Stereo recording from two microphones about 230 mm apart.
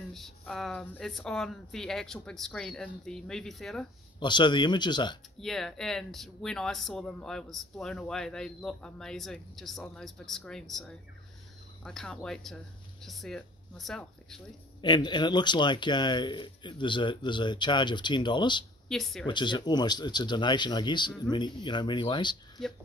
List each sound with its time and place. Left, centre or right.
0.1 s speech: centre
4.2 s speech: centre
5.4 s speech: centre
14.8 s speech: centre
18.9 s speech: centre
19.2 s speech: centre